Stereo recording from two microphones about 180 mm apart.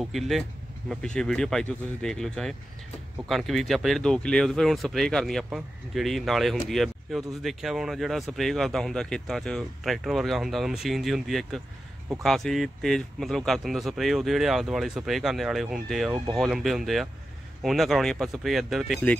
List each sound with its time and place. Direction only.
0.0 s speech: centre (ahead or behind)